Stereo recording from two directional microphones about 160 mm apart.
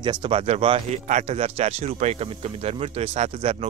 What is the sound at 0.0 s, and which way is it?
Speech, 30° right (ahead or behind).